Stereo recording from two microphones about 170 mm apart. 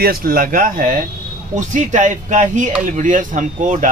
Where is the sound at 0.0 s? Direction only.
60° right (ahead or behind).